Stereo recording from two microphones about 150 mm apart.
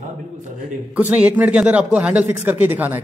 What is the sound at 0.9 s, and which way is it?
A man's voice, 10° right (ahead or behind).